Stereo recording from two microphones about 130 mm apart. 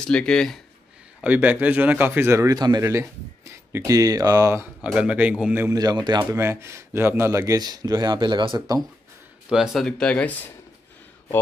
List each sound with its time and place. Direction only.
0.0 s speech: 5° left (ahead or behind)
1.2 s speech: 10° right (ahead or behind)
4.9 s a man's voice: 10° right (ahead or behind)
5.8 s speech: 30° right (ahead or behind)
6.3 s speech: 20° right (ahead or behind)
9.5 s speech: 5° right (ahead or behind)